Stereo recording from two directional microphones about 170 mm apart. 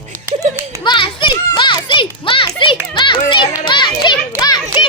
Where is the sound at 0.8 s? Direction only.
30° left (ahead or behind).